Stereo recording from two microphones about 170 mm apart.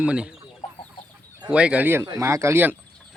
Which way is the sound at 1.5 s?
5° right (ahead or behind).